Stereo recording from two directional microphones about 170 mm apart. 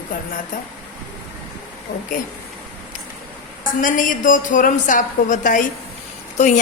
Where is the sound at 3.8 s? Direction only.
50° left (ahead or behind).